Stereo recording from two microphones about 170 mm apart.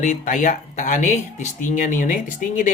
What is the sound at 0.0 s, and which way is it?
Speech, 45° left (ahead or behind).